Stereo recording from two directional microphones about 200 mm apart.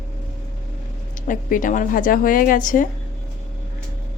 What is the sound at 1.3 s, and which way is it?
A woman's voice, 40° left (ahead or behind).